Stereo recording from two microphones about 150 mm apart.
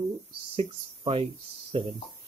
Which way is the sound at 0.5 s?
40° right (ahead or behind).